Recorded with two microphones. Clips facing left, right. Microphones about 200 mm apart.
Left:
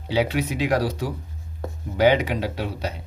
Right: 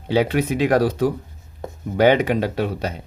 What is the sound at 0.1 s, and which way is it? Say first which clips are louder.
Speech: right 4 dB; 50° right (ahead or behind).